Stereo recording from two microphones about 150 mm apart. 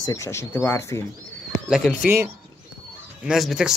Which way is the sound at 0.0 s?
20° left (ahead or behind).